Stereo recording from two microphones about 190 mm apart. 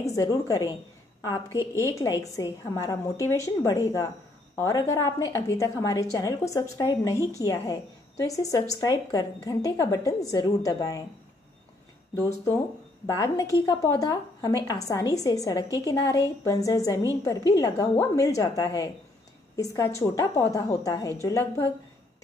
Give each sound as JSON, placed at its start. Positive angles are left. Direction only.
{"t": 0.0, "sound": "a woman's voice", "side_deg": 15}
{"t": 12.2, "sound": "a woman's voice", "side_deg": 15}